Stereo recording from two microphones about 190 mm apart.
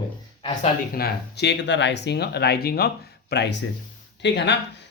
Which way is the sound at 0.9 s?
55° left (ahead or behind).